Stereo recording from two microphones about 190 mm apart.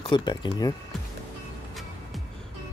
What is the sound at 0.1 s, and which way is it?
Speech, 25° left (ahead or behind).